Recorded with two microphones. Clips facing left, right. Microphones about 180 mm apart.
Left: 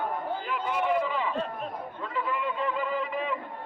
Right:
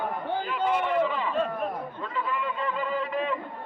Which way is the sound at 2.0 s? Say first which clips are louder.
Left 1 dB; 10° left (ahead or behind).